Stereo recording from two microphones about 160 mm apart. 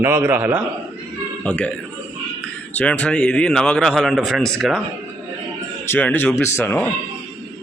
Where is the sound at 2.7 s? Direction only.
5° left (ahead or behind).